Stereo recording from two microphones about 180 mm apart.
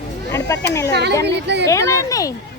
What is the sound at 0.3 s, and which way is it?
Speech, 20° left (ahead or behind).